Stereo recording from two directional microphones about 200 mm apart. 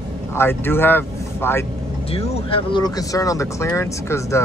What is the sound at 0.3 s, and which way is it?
Speech, 10° left (ahead or behind).